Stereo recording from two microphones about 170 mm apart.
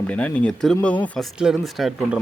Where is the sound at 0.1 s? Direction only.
10° left (ahead or behind).